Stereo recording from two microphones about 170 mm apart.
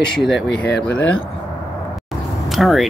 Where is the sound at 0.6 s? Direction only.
75° left (ahead or behind).